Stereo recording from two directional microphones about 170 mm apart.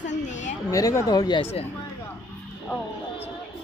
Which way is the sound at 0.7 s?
20° left (ahead or behind).